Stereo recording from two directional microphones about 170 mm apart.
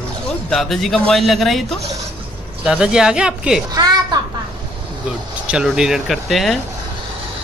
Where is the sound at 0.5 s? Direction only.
Centre (ahead or behind).